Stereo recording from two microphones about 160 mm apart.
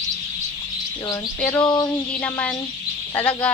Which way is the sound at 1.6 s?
30° left (ahead or behind).